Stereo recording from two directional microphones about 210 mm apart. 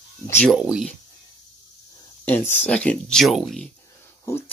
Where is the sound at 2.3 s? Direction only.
10° left (ahead or behind).